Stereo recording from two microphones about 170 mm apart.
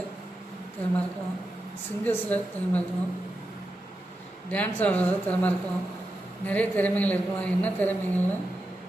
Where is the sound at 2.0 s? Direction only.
10° left (ahead or behind).